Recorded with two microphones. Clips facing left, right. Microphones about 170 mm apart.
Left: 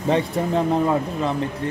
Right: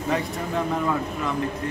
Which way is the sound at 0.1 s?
30° left (ahead or behind).